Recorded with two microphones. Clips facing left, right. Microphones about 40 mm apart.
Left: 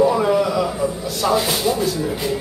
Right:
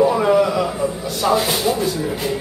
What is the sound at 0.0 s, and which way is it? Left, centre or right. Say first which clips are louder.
A man's voice: right 1 dB; centre.